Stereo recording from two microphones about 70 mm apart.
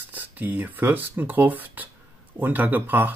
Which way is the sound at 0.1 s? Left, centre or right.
Right.